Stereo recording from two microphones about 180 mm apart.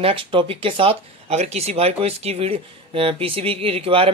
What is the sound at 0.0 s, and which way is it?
Speech, 30° right (ahead or behind).